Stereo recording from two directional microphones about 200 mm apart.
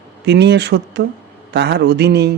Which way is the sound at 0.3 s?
60° right (ahead or behind).